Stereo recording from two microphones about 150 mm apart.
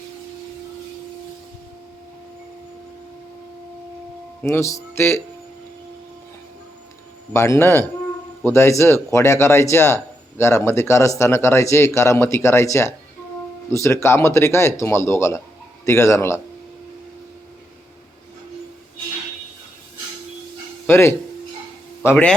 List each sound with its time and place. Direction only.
4.4 s speech: 20° left (ahead or behind)
7.3 s speech: 20° left (ahead or behind)
20.8 s speech: 15° left (ahead or behind)